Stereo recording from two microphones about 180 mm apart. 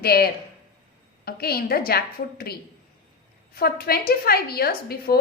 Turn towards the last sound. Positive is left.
turn(degrees=55)  # may be behind; listen again after turning